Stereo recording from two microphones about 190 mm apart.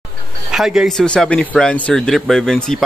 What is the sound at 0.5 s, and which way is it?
Speech, 5° right (ahead or behind).